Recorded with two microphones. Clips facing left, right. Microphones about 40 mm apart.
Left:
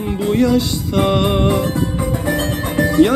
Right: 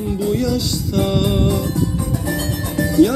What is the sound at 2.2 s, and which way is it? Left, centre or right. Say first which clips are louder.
Music: left 4 dB; left.